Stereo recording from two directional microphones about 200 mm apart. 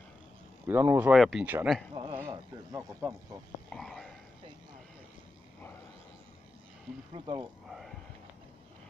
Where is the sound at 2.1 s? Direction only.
15° right (ahead or behind).